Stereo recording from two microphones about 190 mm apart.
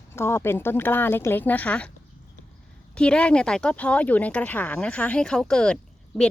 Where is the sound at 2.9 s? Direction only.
5° left (ahead or behind).